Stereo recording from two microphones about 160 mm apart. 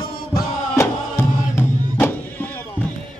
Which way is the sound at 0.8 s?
15° left (ahead or behind).